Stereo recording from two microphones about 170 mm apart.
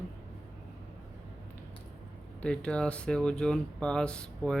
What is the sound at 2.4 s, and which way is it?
A man's voice, 5° left (ahead or behind).